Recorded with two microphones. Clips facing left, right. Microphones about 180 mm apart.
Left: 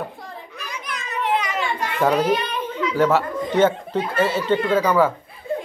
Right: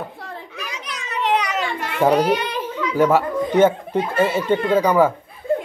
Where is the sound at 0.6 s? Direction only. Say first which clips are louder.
Left 2 dB; 75° right (ahead or behind).